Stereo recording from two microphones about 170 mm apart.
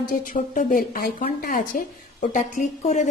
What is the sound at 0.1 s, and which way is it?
A woman's voice, 50° left (ahead or behind).